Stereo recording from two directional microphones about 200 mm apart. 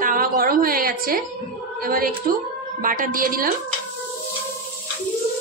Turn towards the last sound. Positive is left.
turn(degrees=-45)  # may be behind; listen again after turning